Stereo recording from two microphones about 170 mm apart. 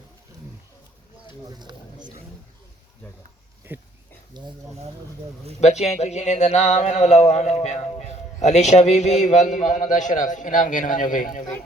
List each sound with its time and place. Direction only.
1.5 s a sound: 25° right (ahead or behind)
3.7 s speech: 10° right (ahead or behind)
4.3 s speech: 25° right (ahead or behind)
5.5 s speech: 40° left (ahead or behind)